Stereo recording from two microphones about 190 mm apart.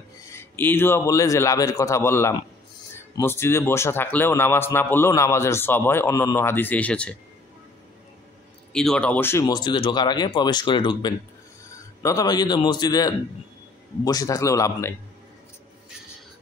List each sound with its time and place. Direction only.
0.3 s a man's voice: 10° left (ahead or behind)
8.7 s a man's voice: 5° left (ahead or behind)